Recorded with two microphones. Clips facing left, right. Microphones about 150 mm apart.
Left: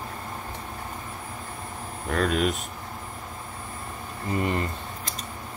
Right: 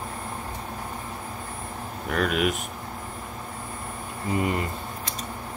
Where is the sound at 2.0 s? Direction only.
10° right (ahead or behind).